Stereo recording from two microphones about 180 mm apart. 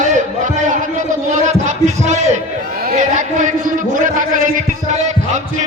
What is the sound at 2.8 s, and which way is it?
A man's voice, 50° right (ahead or behind).